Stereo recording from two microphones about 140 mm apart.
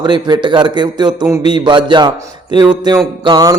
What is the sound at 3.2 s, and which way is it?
Music, 25° right (ahead or behind).